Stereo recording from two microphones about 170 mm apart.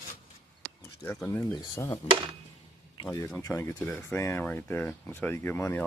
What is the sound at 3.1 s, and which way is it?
Speech, 15° left (ahead or behind).